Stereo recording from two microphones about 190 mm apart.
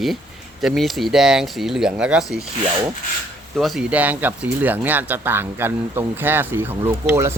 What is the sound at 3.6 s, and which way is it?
Speech, centre (ahead or behind).